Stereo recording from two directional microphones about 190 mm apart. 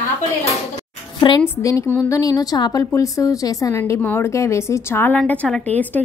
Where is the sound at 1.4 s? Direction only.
15° left (ahead or behind).